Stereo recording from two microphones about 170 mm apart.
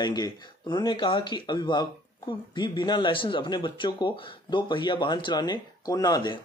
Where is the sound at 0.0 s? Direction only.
25° left (ahead or behind).